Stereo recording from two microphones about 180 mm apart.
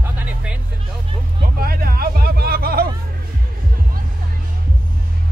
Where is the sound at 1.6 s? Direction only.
55° right (ahead or behind).